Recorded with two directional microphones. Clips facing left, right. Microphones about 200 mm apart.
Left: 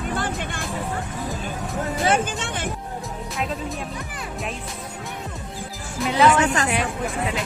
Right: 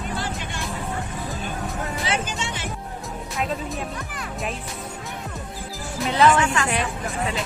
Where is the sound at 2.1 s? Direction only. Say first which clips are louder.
Left 6 dB; 55° left (ahead or behind).